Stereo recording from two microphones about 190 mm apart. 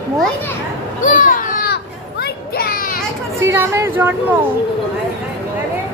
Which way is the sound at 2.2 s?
55° left (ahead or behind).